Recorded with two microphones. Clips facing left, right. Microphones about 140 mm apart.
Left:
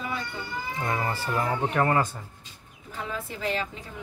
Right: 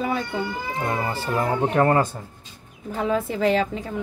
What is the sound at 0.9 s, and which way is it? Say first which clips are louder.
Speech: right 2 dB; 25° right (ahead or behind).